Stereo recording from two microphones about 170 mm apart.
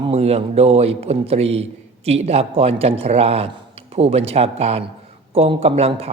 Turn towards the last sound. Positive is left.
turn(degrees=-35)  # may be behind; listen again after turning